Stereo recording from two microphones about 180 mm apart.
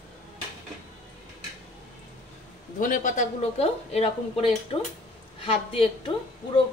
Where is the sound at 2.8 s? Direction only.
45° left (ahead or behind).